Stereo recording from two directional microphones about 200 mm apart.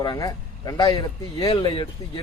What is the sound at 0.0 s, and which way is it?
Speech, 20° left (ahead or behind).